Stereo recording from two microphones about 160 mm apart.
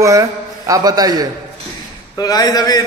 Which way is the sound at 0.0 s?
20° right (ahead or behind).